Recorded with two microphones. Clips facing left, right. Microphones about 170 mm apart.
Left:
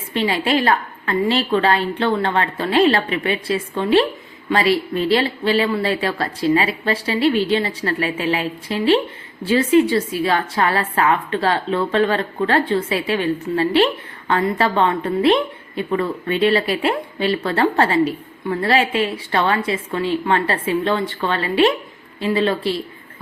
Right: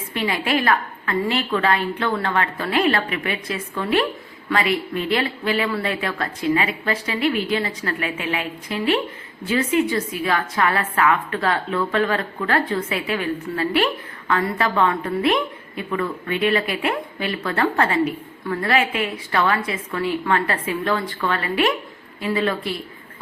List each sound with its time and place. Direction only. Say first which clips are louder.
0.1 s a woman's voice: left 4 dB; 30° left (ahead or behind)